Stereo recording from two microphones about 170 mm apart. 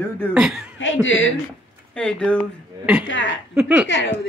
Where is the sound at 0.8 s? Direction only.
90° left.